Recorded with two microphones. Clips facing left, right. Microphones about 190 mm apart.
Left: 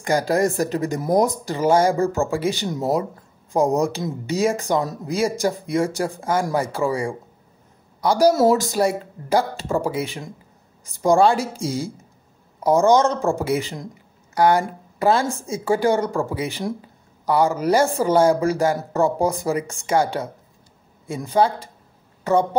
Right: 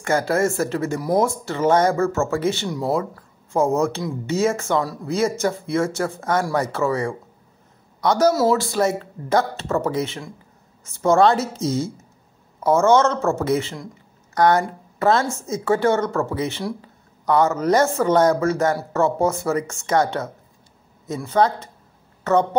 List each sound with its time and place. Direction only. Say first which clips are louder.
0.0 s a woman's voice: even; 15° left (ahead or behind)